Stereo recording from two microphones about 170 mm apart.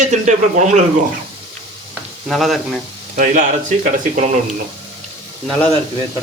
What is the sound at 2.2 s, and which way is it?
Speech, centre (ahead or behind).